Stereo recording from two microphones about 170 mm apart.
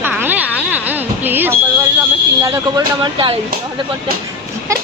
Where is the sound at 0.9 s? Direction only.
10° right (ahead or behind).